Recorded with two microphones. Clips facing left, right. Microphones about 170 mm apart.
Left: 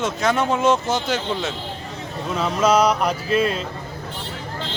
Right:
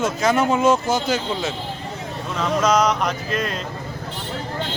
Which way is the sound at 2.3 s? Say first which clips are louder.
Left 1 dB; 10° left (ahead or behind).